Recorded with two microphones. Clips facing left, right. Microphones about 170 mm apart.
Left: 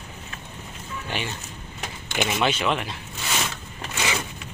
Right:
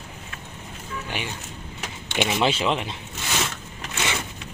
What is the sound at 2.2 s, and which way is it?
Speech, 25° right (ahead or behind).